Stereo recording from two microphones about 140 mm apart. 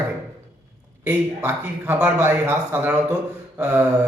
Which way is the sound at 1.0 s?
15° right (ahead or behind).